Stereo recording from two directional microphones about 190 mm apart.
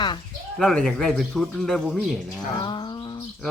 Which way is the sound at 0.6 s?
5° left (ahead or behind).